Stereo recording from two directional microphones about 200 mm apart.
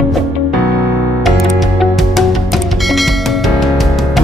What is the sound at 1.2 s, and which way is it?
Music, centre (ahead or behind).